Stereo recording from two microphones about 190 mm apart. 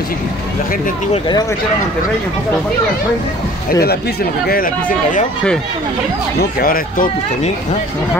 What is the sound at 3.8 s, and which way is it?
Speech, 55° left (ahead or behind).